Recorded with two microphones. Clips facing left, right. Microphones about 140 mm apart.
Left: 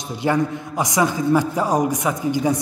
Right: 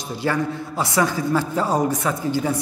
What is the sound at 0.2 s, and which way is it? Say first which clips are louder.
A man's voice: left 3 dB; 20° left (ahead or behind).